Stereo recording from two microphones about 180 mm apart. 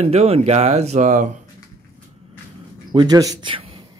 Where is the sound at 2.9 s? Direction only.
20° right (ahead or behind).